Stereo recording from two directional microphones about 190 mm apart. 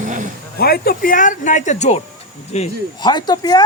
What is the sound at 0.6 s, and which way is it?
Speech, 55° left (ahead or behind).